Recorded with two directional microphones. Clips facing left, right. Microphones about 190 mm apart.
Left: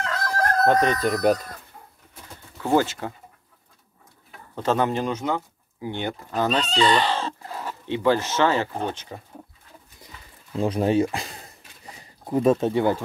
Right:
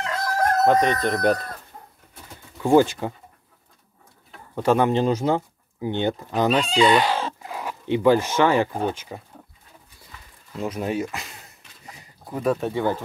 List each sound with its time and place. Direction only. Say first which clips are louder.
0.0 s chicken: right 2 dB; 10° right (ahead or behind)
1.2 s speech: left 1 dB; 5° left (ahead or behind)
2.6 s speech: right 4 dB; 15° right (ahead or behind)
4.6 s speech: right 3 dB; 15° right (ahead or behind)
4.9 s speech: right 5 dB; 35° right (ahead or behind); by 9.2 s 10° right (ahead or behind)
10.5 s speech: left 5 dB; 30° left (ahead or behind)
12.3 s speech: left 4 dB; 20° left (ahead or behind)